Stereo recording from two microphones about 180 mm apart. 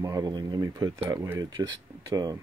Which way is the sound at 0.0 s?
20° right (ahead or behind).